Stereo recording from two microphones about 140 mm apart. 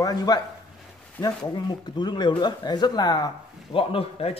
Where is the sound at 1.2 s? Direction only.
10° left (ahead or behind).